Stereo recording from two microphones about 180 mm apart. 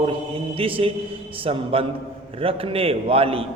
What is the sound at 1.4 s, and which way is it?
A man's voice, 30° right (ahead or behind).